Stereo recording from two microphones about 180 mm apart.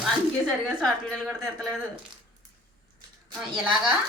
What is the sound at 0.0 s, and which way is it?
A woman's voice, centre (ahead or behind).